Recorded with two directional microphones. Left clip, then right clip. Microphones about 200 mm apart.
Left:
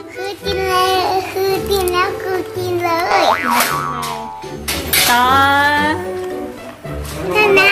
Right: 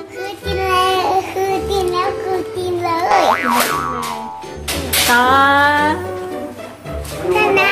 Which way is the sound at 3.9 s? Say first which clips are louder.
Even; 5° right (ahead or behind).